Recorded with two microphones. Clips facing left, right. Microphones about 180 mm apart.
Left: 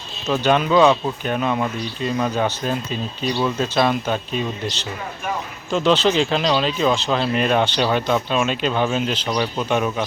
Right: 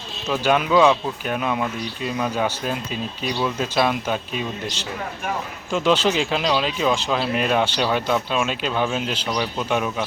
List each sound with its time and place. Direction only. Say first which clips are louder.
0.3 s speech: left 2 dB; 10° right (ahead or behind)